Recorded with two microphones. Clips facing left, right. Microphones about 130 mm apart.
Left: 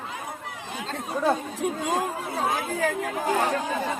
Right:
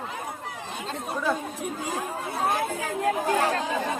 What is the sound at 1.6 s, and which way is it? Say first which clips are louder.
Speech: left 5 dB; 90° left.